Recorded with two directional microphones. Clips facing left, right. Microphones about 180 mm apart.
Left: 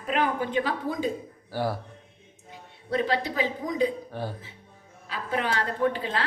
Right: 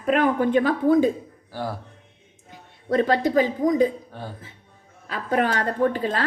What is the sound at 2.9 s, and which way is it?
Speech, 50° right (ahead or behind).